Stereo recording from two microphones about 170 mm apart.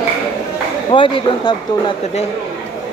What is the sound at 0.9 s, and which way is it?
Speech, 30° left (ahead or behind).